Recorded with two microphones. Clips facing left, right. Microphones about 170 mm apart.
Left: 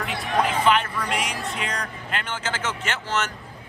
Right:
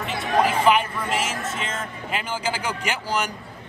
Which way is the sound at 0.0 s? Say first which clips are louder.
Right 2 dB; centre (ahead or behind).